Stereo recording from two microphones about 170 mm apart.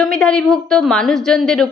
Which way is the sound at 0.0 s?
5° left (ahead or behind).